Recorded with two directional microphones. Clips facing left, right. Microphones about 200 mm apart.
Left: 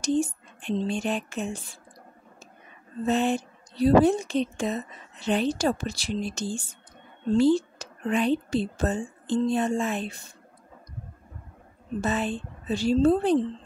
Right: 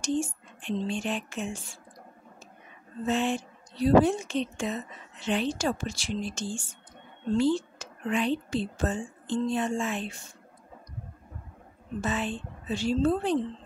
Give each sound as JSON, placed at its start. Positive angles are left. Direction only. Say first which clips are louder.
{"t": 0.0, "sound": "speech", "louder": "left 4 dB", "side_deg": 40}
{"t": 3.1, "sound": "a woman's voice", "louder": "left 3 dB", "side_deg": 40}
{"t": 12.0, "sound": "a woman's voice", "louder": "left 3 dB", "side_deg": 40}